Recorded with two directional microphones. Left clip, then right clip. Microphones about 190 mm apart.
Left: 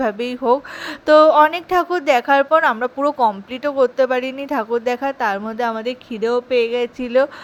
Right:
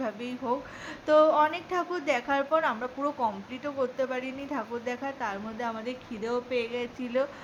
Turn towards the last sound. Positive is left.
turn(degrees=45)  # may be behind; listen again after turning